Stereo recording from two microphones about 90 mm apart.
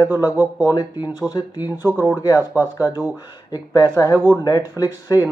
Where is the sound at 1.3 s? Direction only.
50° left (ahead or behind).